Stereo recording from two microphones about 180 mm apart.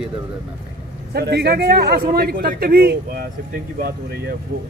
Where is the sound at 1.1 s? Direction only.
65° right (ahead or behind).